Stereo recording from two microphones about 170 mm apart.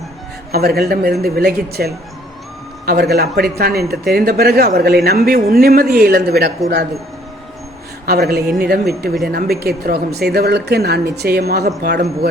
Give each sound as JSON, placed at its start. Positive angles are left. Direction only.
{"t": 0.5, "sound": "speech", "side_deg": -65}
{"t": 8.0, "sound": "speech", "side_deg": -65}